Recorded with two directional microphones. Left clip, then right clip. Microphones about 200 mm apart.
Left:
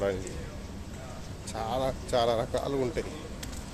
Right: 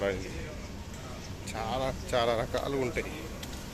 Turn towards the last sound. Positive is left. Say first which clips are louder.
# left 1 dB
turn(degrees=10)  # may be behind; listen again after turning